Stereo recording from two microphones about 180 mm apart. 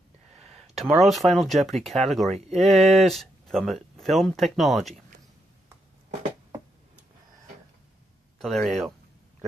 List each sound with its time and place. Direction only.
0.4 s a sound: 35° right (ahead or behind)
0.7 s speech: centre (ahead or behind)
2.3 s speech: 40° right (ahead or behind)
2.8 s speech: centre (ahead or behind)
8.4 s speech: centre (ahead or behind)